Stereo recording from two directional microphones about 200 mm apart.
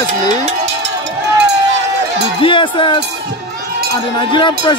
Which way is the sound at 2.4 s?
25° left (ahead or behind).